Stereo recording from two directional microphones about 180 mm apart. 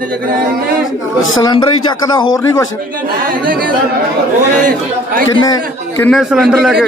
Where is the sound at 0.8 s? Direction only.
90° left.